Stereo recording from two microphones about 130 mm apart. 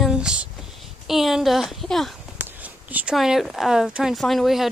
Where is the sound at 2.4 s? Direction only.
10° right (ahead or behind).